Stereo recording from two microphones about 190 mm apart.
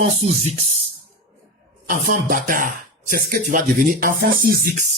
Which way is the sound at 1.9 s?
45° right (ahead or behind).